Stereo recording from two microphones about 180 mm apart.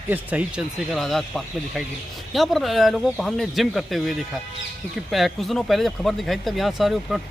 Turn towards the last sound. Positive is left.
turn(degrees=0)  # may be behind; listen again after turning